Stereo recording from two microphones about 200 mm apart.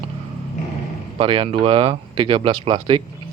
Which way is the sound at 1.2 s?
25° right (ahead or behind).